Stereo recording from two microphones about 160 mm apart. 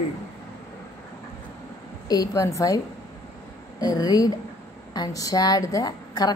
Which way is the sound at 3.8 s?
25° left (ahead or behind).